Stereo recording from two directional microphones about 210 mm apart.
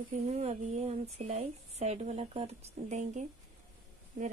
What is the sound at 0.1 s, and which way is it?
Speech, 30° right (ahead or behind).